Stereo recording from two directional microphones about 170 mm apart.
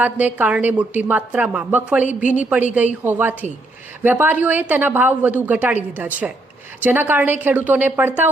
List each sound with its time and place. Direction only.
0.0 s a woman's voice: 10° right (ahead or behind)
2.0 s a woman's voice: 45° left (ahead or behind)
2.4 s a woman's voice: 10° right (ahead or behind)